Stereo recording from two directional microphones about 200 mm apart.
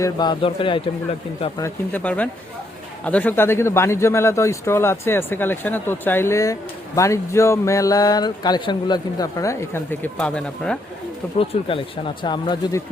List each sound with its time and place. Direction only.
0.0 s speech: 20° left (ahead or behind); by 10.8 s 5° left (ahead or behind)
11.3 s speech: 25° left (ahead or behind)